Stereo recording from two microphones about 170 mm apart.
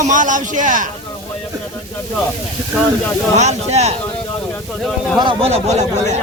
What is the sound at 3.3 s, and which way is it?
Speech, 40° right (ahead or behind).